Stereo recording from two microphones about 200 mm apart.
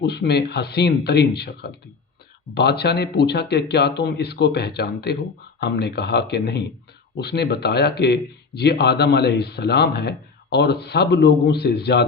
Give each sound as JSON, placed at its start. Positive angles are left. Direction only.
{"t": 0.0, "sound": "speech", "side_deg": 55}